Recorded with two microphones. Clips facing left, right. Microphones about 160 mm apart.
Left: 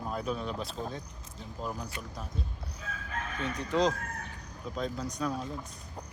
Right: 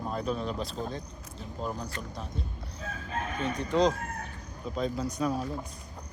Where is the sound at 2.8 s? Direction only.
30° right (ahead or behind).